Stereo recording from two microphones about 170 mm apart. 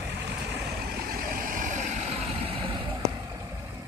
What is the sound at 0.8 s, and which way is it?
Vehicle, 55° right (ahead or behind).